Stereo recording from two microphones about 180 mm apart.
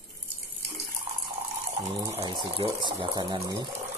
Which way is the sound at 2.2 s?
25° right (ahead or behind).